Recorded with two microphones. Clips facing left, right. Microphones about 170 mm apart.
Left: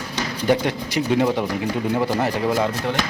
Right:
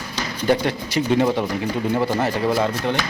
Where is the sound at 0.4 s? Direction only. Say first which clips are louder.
Even; 15° left (ahead or behind).